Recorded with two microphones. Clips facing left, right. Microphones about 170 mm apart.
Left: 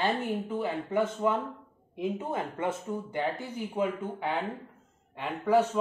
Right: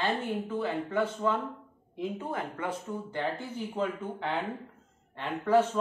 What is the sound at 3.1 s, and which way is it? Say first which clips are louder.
Speech: even; 10° left (ahead or behind).